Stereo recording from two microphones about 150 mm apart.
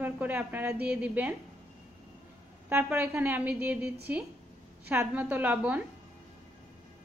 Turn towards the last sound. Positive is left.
turn(degrees=-10)  # may be behind; listen again after turning